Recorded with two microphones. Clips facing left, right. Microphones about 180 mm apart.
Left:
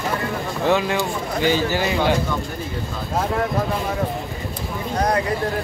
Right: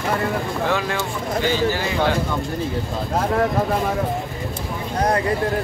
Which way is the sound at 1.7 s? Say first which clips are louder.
Left 1 dB; 15° left (ahead or behind).